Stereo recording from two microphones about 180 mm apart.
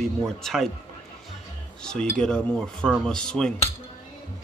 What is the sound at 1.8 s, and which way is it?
Speech, 5° left (ahead or behind).